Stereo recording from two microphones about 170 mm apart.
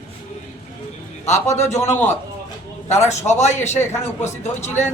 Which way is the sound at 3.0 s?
40° left (ahead or behind).